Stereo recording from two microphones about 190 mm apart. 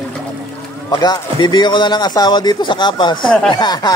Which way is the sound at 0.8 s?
20° left (ahead or behind).